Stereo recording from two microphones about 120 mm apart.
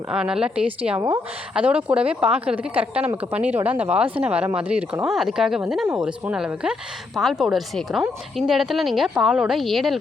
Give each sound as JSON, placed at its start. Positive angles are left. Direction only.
{"t": 0.1, "sound": "speech", "side_deg": -5}
{"t": 0.9, "sound": "a woman's voice", "side_deg": -25}
{"t": 1.5, "sound": "a woman's voice", "side_deg": -10}